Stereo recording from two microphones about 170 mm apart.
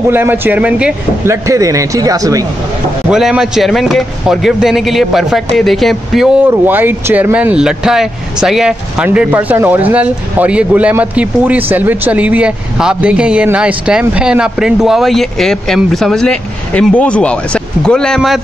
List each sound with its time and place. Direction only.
0.1 s speech: 10° right (ahead or behind)
1.3 s a man's voice: 20° right (ahead or behind)
3.1 s speech: 5° right (ahead or behind)
6.4 s speech: 10° right (ahead or behind)